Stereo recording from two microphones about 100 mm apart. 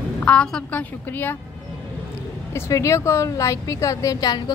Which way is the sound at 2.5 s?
30° left (ahead or behind).